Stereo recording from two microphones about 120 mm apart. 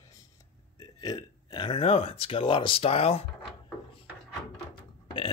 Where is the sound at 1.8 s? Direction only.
55° left (ahead or behind).